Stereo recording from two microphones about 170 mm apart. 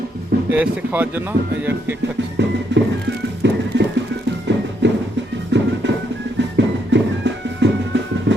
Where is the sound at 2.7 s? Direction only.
90° right.